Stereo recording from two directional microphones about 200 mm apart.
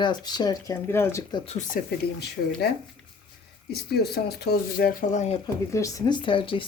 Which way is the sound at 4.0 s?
50° left (ahead or behind).